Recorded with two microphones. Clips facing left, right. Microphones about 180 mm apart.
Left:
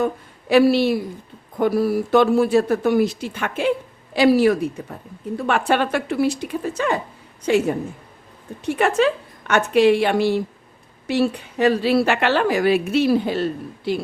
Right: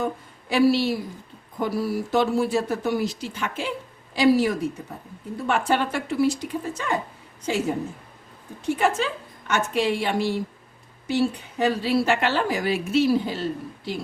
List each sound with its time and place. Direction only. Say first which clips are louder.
0.0 s a woman's voice: left 5 dB; 65° left (ahead or behind)
8.6 s a woman's voice: left 5 dB; 65° left (ahead or behind)